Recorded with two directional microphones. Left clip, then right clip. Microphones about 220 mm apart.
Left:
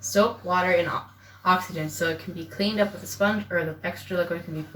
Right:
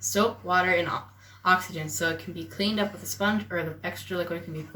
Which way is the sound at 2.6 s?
15° right (ahead or behind).